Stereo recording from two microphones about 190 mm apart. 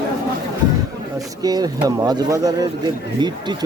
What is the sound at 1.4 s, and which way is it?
Speech, 20° right (ahead or behind).